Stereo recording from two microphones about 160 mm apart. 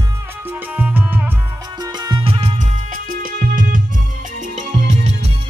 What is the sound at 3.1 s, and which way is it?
Music, 60° right (ahead or behind).